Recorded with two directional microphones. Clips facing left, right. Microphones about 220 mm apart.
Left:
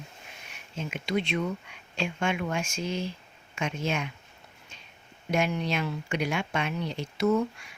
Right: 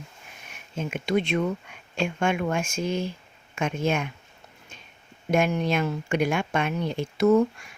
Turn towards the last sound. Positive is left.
turn(degrees=-50)  # may be behind; listen again after turning